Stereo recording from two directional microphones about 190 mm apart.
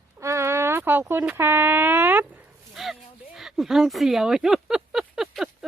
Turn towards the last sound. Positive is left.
turn(degrees=0)  # may be behind; listen again after turning